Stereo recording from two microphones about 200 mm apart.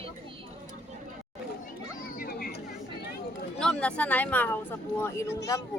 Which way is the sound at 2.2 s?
50° left (ahead or behind).